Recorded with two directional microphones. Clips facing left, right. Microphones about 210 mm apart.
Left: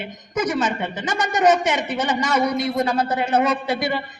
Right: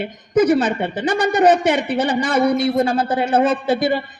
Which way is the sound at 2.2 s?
30° right (ahead or behind).